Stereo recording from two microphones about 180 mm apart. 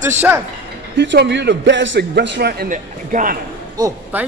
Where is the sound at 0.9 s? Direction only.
75° right (ahead or behind); by 3.3 s 45° right (ahead or behind).